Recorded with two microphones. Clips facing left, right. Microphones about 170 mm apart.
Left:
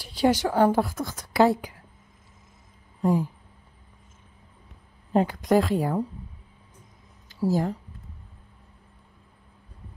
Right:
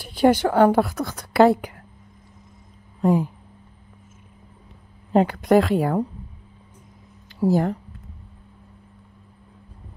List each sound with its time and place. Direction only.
0.0 s a woman's voice: 55° right (ahead or behind)
3.0 s speech: 65° right (ahead or behind)
5.1 s a woman's voice: 65° right (ahead or behind)
7.2 s speech: 60° right (ahead or behind)